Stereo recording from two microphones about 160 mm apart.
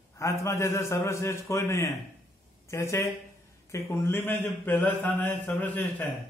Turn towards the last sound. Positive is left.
turn(degrees=10)  # may be behind; listen again after turning